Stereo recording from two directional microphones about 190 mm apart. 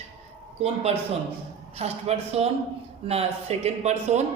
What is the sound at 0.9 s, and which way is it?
Speech, 35° right (ahead or behind).